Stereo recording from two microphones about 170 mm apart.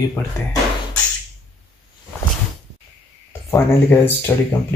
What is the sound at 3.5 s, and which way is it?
Speech, 15° left (ahead or behind).